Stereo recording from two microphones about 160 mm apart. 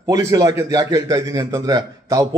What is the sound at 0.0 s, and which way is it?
A man's voice, 20° right (ahead or behind).